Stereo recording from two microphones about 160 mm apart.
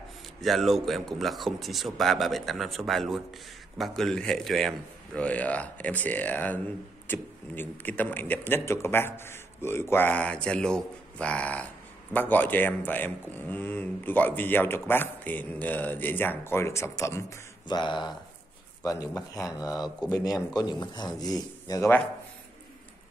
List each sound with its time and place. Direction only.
0.4 s speech: centre (ahead or behind); by 17.2 s 15° left (ahead or behind)
17.6 s speech: 30° left (ahead or behind)